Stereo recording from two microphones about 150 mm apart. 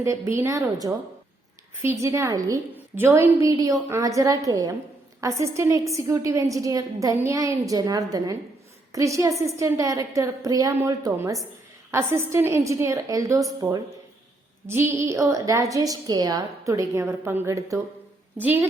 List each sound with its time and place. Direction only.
0.0 s a woman's voice: 20° right (ahead or behind)
1.7 s a woman's voice: 20° right (ahead or behind)